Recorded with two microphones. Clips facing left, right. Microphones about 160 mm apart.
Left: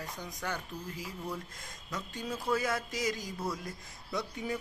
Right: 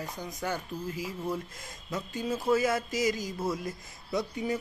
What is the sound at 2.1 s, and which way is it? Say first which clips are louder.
Speech: right 6 dB; 5° right (ahead or behind).